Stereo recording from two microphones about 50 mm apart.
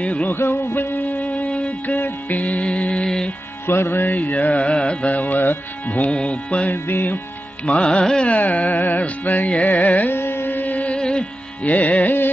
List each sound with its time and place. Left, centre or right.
0.0 s music: left
0.3 s music: left
1.3 s music: left
3.6 s music: left
4.1 s music: left
5.1 s carnatic music: left
6.7 s carnatic music: left
7.6 s music: left
8.3 s carnatic music: left
10.1 s carnatic music: left
10.7 s music: left
11.0 s music: centre
11.6 s carnatic music: left